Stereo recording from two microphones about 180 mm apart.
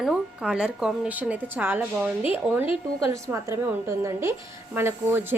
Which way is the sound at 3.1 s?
20° right (ahead or behind).